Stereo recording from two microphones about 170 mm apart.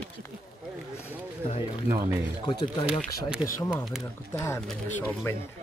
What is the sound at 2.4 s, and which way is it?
Speech, 25° left (ahead or behind).